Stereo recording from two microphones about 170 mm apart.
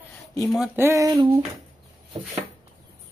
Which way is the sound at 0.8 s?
15° right (ahead or behind).